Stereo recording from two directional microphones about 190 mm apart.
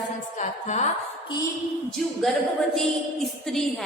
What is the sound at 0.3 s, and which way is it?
Speech, 40° left (ahead or behind).